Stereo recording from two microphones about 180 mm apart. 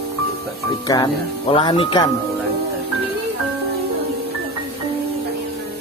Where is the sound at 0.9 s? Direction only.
25° left (ahead or behind).